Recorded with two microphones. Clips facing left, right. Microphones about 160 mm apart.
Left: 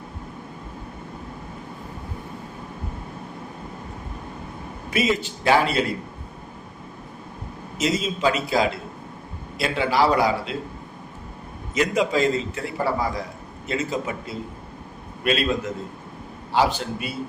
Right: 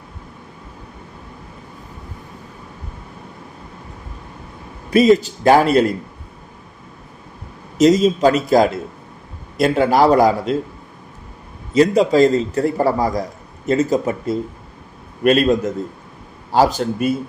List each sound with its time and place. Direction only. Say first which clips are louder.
4.9 s a man's voice: right 11 dB; 40° right (ahead or behind)
7.8 s a man's voice: right 11 dB; 40° right (ahead or behind)
11.7 s a man's voice: right 8 dB; 35° right (ahead or behind)